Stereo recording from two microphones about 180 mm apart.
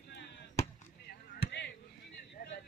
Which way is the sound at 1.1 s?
65° left (ahead or behind).